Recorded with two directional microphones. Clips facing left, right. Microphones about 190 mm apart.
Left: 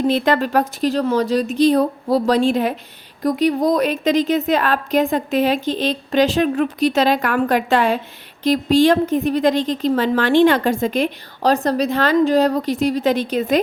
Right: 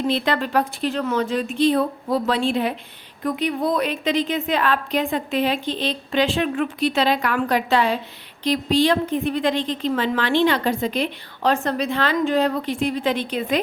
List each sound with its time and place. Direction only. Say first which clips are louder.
0.1 s a woman's voice: left 4 dB; 45° left (ahead or behind)